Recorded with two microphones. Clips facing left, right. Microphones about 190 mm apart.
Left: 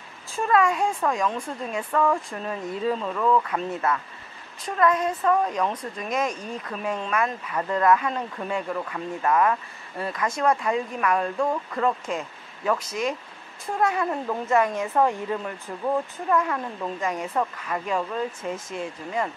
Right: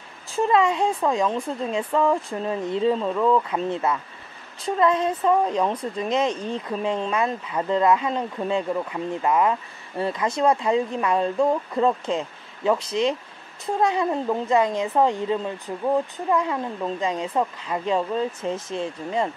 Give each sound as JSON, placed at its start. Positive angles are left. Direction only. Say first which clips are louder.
{"t": 0.4, "sound": "speech", "louder": "right 2 dB", "side_deg": -20}